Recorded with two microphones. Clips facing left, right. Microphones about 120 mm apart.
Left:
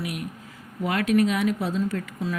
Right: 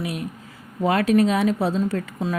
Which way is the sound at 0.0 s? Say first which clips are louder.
Right 3 dB; 30° right (ahead or behind).